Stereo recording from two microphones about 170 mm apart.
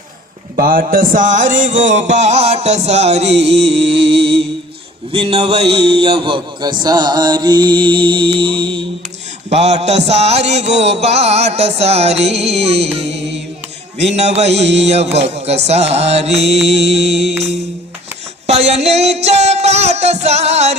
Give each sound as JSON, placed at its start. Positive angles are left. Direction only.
{"t": 0.5, "sound": "mantra", "side_deg": -55}
{"t": 5.1, "sound": "a man's voice", "side_deg": -35}
{"t": 9.5, "sound": "mantra", "side_deg": -40}
{"t": 18.4, "sound": "music", "side_deg": -40}